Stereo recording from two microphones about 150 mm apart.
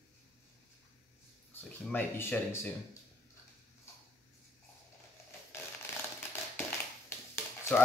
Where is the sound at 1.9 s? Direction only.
15° left (ahead or behind).